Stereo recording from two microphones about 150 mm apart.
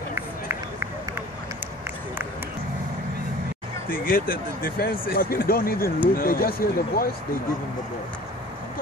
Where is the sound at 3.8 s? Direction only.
75° left (ahead or behind).